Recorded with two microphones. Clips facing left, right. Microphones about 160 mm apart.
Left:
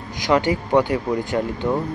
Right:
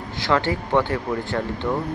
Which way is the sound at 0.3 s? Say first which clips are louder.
Left 3 dB; 15° left (ahead or behind).